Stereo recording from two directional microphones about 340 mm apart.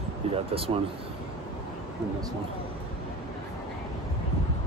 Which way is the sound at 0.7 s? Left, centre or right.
Centre.